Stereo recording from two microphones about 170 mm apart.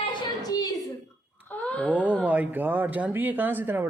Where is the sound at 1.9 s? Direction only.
10° right (ahead or behind).